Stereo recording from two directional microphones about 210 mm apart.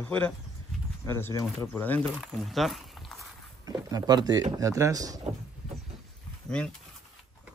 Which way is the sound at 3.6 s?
20° right (ahead or behind).